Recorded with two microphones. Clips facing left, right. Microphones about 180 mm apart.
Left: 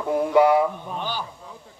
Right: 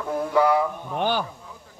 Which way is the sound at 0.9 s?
60° right (ahead or behind).